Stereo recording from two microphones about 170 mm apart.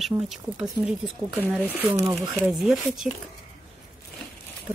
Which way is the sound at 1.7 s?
15° right (ahead or behind).